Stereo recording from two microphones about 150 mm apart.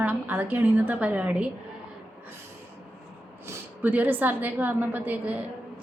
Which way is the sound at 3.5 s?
10° right (ahead or behind).